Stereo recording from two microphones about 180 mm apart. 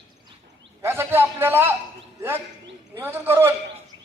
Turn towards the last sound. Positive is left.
turn(degrees=-10)  # may be behind; listen again after turning